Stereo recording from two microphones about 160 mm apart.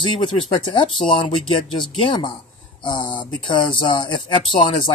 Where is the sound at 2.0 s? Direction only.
30° left (ahead or behind).